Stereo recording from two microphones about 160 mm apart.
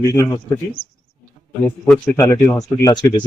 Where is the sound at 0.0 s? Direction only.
15° left (ahead or behind).